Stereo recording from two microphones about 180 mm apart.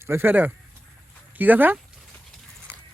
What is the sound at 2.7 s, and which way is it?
Horse, 10° right (ahead or behind).